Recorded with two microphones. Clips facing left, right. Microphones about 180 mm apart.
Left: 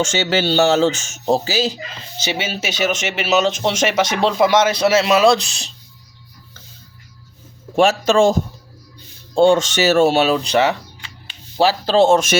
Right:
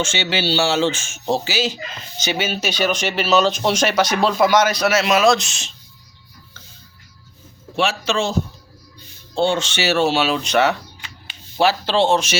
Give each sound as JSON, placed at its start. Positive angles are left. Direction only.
{"t": 0.0, "sound": "speech", "side_deg": 45}
{"t": 7.8, "sound": "speech", "side_deg": 45}